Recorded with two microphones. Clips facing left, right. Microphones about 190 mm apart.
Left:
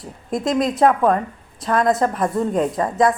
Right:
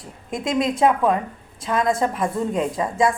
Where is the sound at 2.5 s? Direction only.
45° left (ahead or behind).